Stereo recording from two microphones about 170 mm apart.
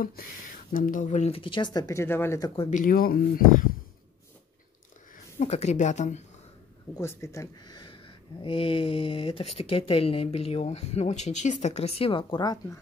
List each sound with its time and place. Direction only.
0.7 s speech: 50° left (ahead or behind); by 2.5 s 15° left (ahead or behind)
2.7 s speech: 55° left (ahead or behind)
5.1 s speech: 40° left (ahead or behind)
7.0 s speech: 15° left (ahead or behind)